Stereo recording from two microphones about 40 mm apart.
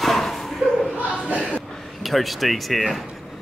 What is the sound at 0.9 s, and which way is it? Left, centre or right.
Chuckle, right.